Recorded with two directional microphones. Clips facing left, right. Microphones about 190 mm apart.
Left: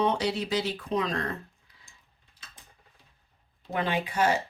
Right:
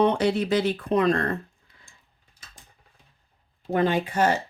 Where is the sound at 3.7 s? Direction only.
45° right (ahead or behind).